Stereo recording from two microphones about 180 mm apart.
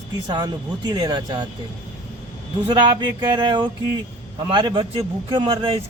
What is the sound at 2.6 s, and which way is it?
Speech, 25° right (ahead or behind).